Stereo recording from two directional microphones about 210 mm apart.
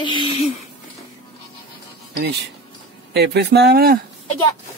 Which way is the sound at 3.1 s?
50° right (ahead or behind).